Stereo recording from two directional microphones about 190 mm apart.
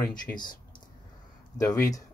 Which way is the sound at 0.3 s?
10° left (ahead or behind).